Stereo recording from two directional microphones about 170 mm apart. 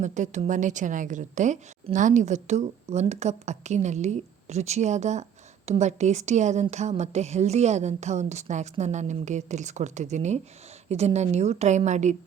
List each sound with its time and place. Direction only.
0.0 s a woman's voice: 45° right (ahead or behind)